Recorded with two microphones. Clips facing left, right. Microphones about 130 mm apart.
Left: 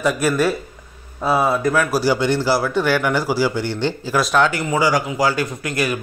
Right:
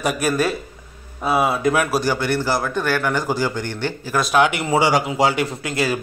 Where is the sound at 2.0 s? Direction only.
15° left (ahead or behind).